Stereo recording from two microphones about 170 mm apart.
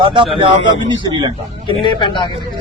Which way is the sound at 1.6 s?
30° left (ahead or behind).